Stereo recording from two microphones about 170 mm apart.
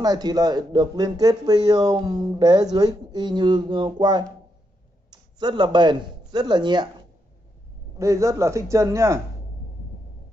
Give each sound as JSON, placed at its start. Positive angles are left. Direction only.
{"t": 0.0, "sound": "speech", "side_deg": -25}
{"t": 8.0, "sound": "a man's voice", "side_deg": -20}